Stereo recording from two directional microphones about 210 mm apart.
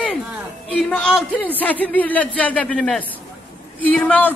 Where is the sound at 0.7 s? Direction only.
5° left (ahead or behind).